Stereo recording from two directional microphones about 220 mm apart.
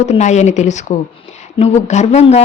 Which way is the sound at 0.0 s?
30° left (ahead or behind).